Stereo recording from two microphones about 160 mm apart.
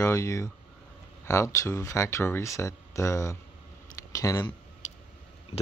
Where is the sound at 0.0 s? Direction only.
20° left (ahead or behind).